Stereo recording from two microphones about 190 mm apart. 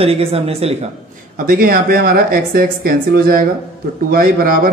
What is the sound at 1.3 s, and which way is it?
Speech, 50° right (ahead or behind).